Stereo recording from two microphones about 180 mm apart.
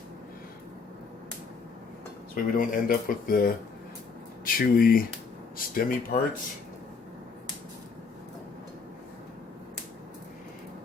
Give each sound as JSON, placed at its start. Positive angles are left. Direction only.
{"t": 2.3, "sound": "speech", "side_deg": 50}